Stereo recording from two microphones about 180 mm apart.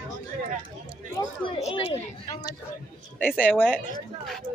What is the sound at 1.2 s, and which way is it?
Speech, 30° left (ahead or behind).